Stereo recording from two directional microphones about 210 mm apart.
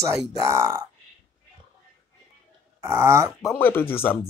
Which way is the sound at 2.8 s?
10° right (ahead or behind).